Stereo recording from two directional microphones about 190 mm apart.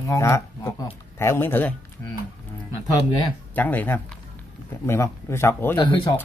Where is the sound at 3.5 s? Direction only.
10° left (ahead or behind).